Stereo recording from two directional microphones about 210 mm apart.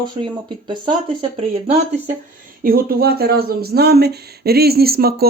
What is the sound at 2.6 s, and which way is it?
Speech, 45° right (ahead or behind).